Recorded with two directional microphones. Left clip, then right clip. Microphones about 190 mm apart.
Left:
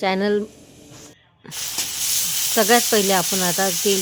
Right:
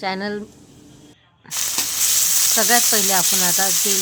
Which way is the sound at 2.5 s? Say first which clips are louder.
Left 3 dB; 35° left (ahead or behind).